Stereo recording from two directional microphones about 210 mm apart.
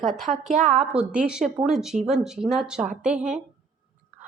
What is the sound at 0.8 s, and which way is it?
Speech, 5° right (ahead or behind).